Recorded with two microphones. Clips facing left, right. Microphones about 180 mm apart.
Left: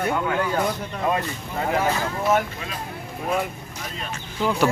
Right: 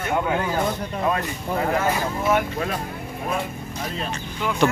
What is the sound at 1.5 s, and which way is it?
Speech, 50° right (ahead or behind).